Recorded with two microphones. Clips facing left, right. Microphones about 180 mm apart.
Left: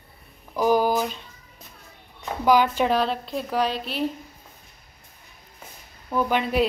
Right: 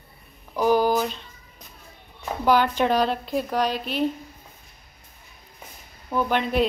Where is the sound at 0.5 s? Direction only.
10° left (ahead or behind).